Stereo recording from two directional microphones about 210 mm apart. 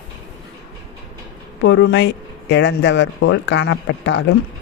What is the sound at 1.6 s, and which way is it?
Speech, 60° left (ahead or behind).